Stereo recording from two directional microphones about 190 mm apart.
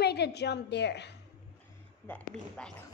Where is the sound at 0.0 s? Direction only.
60° left (ahead or behind).